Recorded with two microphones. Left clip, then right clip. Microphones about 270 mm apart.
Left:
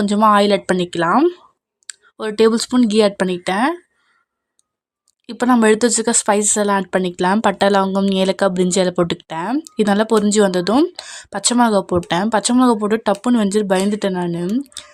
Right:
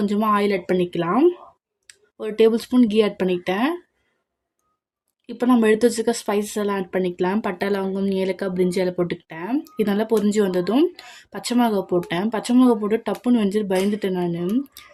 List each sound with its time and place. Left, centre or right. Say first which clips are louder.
0.0 s speech: left 7 dB; left
5.2 s speech: left 4 dB; left